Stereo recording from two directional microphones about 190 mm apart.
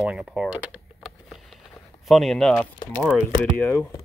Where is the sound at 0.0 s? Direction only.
5° right (ahead or behind).